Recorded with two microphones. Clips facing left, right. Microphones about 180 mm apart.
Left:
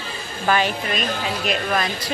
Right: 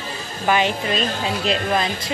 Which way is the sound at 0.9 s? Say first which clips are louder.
Right 2 dB; 30° right (ahead or behind).